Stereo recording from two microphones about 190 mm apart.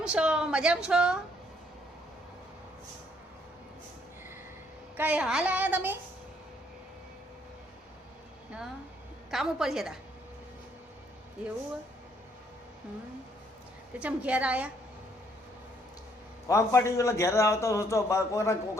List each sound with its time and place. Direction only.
0.0 s a woman's voice: 5° right (ahead or behind)
4.9 s a woman's voice: 10° right (ahead or behind)
9.3 s a woman's voice: centre (ahead or behind)
13.9 s a woman's voice: 5° right (ahead or behind)
16.5 s a man's voice: 15° left (ahead or behind)